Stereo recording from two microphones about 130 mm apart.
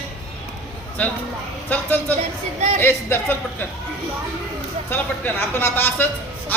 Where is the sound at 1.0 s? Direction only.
10° left (ahead or behind).